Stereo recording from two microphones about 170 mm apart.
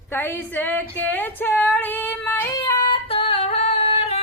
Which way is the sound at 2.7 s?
25° left (ahead or behind).